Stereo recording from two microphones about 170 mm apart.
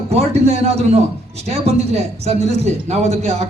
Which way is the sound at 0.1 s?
40° right (ahead or behind).